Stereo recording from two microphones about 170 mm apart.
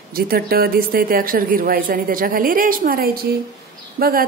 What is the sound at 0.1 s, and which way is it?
A woman's voice, 60° right (ahead or behind).